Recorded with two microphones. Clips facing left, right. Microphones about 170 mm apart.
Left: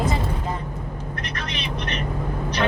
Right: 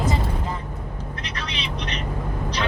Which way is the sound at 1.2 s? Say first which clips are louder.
Left 1 dB; 55° left (ahead or behind).